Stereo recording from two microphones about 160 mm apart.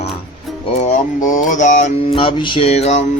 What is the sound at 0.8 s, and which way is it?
Mantra, 50° left (ahead or behind).